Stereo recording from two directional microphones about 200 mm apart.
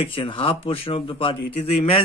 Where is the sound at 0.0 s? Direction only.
25° left (ahead or behind).